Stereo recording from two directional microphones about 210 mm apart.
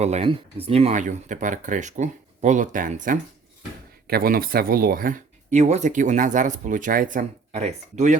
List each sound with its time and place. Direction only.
0.0 s speech: 30° right (ahead or behind)